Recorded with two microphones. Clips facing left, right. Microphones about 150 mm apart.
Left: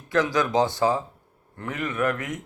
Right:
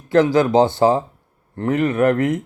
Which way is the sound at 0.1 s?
30° right (ahead or behind).